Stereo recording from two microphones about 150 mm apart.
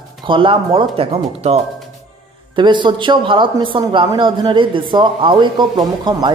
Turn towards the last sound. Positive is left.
turn(degrees=-25)  # may be behind; listen again after turning